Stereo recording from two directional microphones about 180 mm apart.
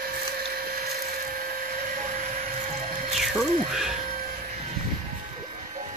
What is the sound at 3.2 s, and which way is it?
Speech, centre (ahead or behind).